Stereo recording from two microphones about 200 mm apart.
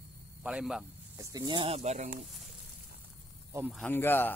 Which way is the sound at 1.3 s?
20° right (ahead or behind).